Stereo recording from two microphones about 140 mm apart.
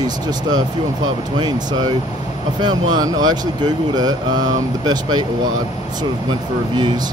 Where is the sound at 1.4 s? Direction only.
30° right (ahead or behind).